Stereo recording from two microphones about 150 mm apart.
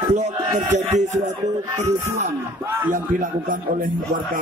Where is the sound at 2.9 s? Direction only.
60° right (ahead or behind).